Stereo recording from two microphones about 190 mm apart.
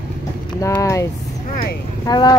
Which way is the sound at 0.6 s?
15° left (ahead or behind).